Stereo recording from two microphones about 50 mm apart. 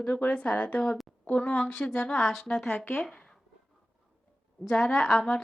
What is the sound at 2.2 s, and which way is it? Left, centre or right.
Speech, centre.